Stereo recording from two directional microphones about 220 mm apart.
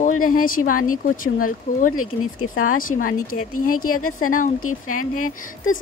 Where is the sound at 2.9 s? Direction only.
40° left (ahead or behind).